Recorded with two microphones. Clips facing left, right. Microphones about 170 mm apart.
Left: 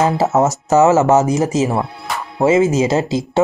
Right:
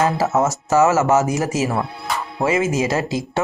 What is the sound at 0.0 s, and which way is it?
Speech, 20° left (ahead or behind).